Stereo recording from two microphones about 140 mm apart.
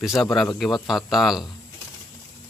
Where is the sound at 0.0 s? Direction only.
Centre (ahead or behind).